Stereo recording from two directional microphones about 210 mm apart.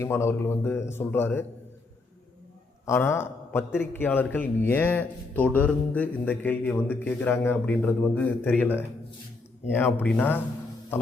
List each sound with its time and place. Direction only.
0.0 s speech: 10° left (ahead or behind)
2.8 s a man's voice: 10° left (ahead or behind)